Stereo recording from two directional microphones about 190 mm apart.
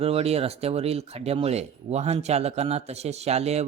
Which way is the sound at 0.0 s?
30° right (ahead or behind).